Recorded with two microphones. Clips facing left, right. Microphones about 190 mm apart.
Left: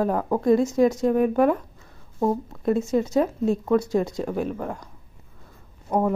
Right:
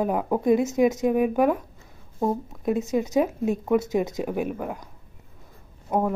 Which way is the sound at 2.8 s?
Centre (ahead or behind).